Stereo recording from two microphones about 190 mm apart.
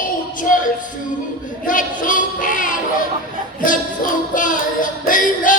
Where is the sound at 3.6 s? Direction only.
45° left (ahead or behind).